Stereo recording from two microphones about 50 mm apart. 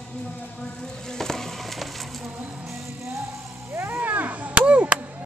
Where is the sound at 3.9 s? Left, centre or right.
Right.